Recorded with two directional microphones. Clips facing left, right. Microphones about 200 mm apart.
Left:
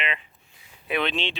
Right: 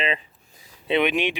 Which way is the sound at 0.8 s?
20° right (ahead or behind).